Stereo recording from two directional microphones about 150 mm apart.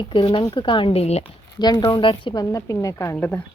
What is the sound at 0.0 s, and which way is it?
Speech, 35° left (ahead or behind).